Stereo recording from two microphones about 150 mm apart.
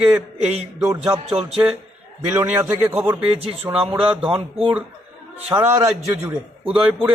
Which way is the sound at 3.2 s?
40° right (ahead or behind).